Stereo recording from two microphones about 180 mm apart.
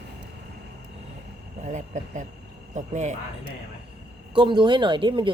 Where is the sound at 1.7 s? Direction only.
40° right (ahead or behind).